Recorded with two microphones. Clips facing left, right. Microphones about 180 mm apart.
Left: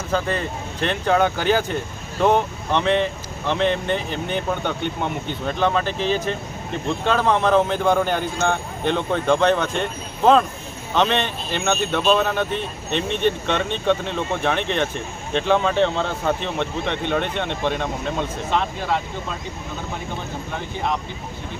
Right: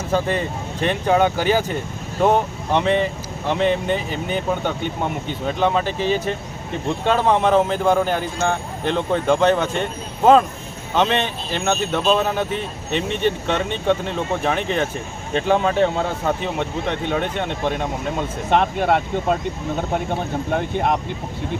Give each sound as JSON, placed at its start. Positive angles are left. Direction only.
{"t": 0.1, "sound": "speech", "side_deg": -10}
{"t": 18.5, "sound": "speech", "side_deg": -60}